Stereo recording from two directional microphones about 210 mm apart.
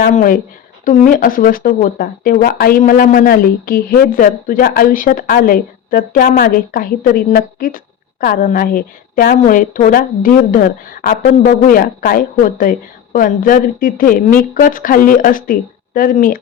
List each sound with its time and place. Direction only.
0.0 s speech: 40° left (ahead or behind)